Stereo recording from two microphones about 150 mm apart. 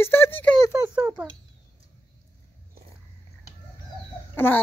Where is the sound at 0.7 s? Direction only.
15° right (ahead or behind).